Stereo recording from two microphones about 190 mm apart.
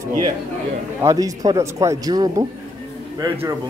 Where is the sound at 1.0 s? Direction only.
15° right (ahead or behind).